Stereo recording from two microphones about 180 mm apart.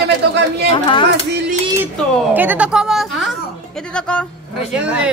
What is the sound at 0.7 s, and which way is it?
Speech, 30° left (ahead or behind).